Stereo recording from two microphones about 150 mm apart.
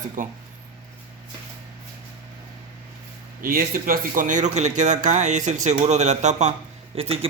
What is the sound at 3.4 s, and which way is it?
Speech, 70° right (ahead or behind).